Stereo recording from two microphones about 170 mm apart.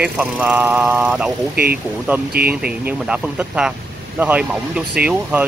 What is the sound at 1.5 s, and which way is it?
Speech, 65° right (ahead or behind).